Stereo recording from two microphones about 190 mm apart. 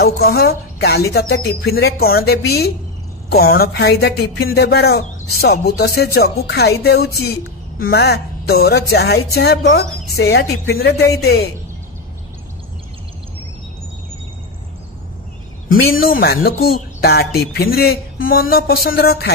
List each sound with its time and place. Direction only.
0.0 s speech: 55° left (ahead or behind)
16.0 s music: 50° left (ahead or behind)
16.4 s speech: 55° left (ahead or behind)
18.3 s music: 50° left (ahead or behind)